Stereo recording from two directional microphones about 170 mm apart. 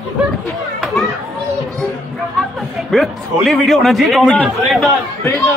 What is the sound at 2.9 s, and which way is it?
A man's voice, centre (ahead or behind).